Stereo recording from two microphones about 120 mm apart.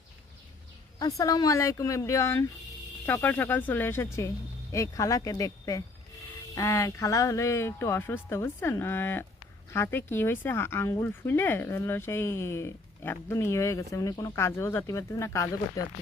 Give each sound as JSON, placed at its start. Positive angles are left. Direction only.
{"t": 0.9, "sound": "speech", "side_deg": 30}